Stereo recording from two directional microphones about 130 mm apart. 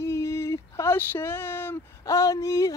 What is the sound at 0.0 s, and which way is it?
Speech, 20° left (ahead or behind).